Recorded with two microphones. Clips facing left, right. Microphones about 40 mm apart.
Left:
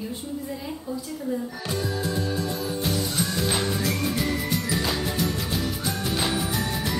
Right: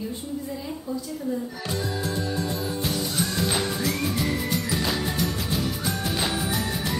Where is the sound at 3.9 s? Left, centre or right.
Centre.